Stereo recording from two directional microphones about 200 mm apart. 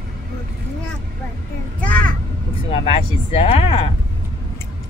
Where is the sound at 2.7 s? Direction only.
30° left (ahead or behind).